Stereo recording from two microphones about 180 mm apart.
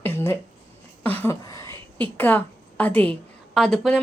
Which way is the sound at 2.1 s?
10° left (ahead or behind).